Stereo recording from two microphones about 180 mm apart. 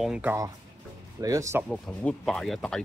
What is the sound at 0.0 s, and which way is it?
Speech, 5° right (ahead or behind).